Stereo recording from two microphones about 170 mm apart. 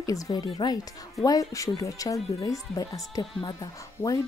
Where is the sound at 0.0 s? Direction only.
20° left (ahead or behind).